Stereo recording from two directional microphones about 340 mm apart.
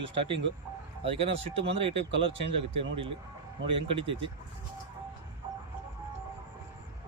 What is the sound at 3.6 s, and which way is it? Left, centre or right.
Speech, centre.